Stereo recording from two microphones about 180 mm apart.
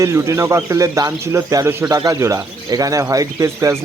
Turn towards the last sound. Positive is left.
turn(degrees=-15)  # may be behind; listen again after turning